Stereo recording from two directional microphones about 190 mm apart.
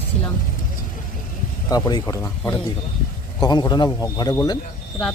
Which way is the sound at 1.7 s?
20° left (ahead or behind).